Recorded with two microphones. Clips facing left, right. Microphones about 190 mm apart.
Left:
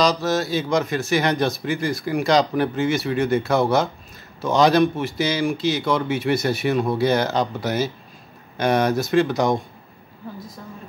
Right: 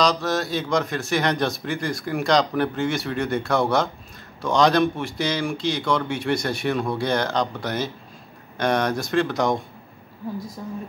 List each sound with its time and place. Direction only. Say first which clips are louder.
0.0 s speech: left 2 dB; 5° left (ahead or behind)
10.6 s a woman's voice: right 5 dB; 15° right (ahead or behind)